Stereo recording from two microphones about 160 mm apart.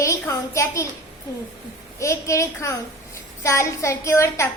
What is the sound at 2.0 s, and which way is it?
A child's voice, 20° left (ahead or behind).